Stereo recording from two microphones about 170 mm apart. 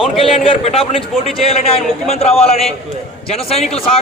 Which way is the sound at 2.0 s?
35° left (ahead or behind).